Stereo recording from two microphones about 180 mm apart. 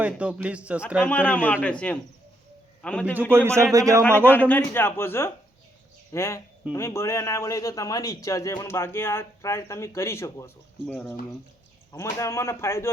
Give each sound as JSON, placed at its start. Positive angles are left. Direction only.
{"t": 0.0, "sound": "a man's voice", "side_deg": -5}
{"t": 1.0, "sound": "a man's voice", "side_deg": 10}
{"t": 3.3, "sound": "a man's voice", "side_deg": -15}
{"t": 4.3, "sound": "a man's voice", "side_deg": 10}